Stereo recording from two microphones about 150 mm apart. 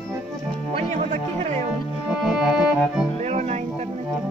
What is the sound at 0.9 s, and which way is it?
Music, 55° right (ahead or behind).